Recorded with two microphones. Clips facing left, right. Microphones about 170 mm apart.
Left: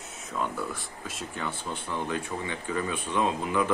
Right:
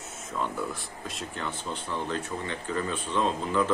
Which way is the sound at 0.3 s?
Centre (ahead or behind).